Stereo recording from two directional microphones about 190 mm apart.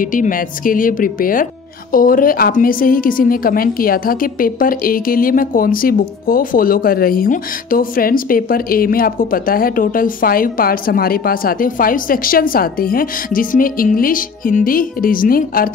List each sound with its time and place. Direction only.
0.0 s speech: 45° left (ahead or behind)